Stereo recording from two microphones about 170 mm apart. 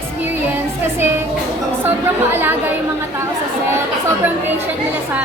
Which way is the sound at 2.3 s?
10° right (ahead or behind).